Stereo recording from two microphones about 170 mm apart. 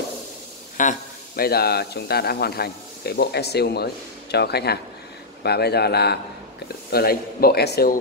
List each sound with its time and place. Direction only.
0.7 s a man's voice: 55° left (ahead or behind)